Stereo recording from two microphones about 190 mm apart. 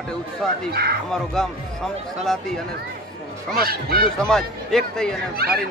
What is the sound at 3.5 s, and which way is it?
Speech, 55° right (ahead or behind).